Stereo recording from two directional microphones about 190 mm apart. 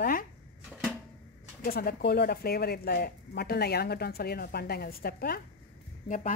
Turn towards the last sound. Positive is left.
turn(degrees=40)  # may be behind; listen again after turning